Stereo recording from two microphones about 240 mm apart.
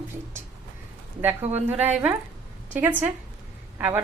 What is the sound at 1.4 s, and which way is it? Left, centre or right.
Speech, right.